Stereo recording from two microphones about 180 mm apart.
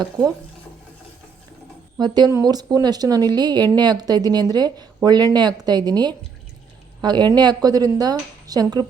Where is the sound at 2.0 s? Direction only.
20° right (ahead or behind).